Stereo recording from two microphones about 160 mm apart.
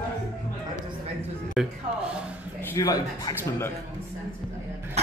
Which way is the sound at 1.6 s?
Centre (ahead or behind).